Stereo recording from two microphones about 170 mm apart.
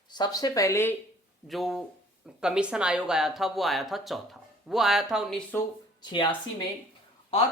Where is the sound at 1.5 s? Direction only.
Centre (ahead or behind).